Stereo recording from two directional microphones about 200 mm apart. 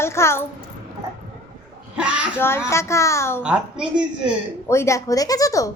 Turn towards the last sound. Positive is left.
turn(degrees=15)  # may be behind; listen again after turning